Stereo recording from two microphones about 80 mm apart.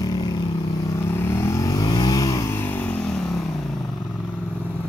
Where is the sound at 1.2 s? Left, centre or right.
Left.